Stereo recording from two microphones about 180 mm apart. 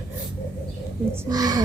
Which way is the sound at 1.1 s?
20° right (ahead or behind).